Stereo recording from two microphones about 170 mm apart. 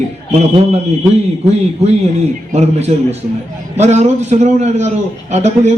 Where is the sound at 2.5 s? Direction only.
40° right (ahead or behind).